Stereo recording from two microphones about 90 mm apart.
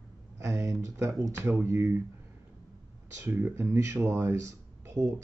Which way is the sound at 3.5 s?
30° right (ahead or behind).